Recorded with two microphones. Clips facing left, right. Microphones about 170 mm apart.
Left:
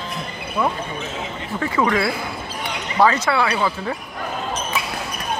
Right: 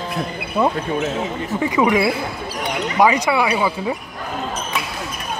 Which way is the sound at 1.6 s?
15° right (ahead or behind).